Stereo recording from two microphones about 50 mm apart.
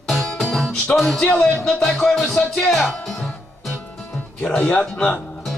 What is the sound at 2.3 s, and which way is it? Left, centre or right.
Music, centre.